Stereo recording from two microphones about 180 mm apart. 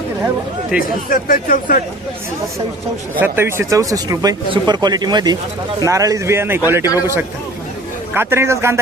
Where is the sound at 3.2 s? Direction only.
10° right (ahead or behind).